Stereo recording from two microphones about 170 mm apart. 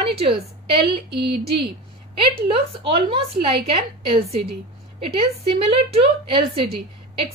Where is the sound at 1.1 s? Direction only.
75° right (ahead or behind).